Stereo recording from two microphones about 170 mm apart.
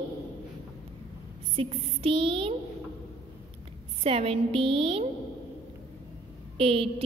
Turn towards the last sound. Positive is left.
turn(degrees=-35)  # may be behind; listen again after turning